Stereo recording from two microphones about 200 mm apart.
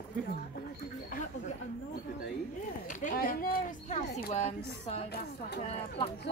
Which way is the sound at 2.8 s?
45° left (ahead or behind).